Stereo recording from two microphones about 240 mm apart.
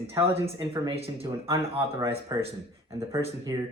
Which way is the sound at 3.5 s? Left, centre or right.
Centre.